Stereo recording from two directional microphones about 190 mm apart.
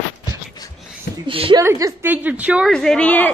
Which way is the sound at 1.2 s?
25° right (ahead or behind).